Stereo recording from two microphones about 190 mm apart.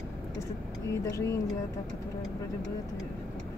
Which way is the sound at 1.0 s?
15° left (ahead or behind).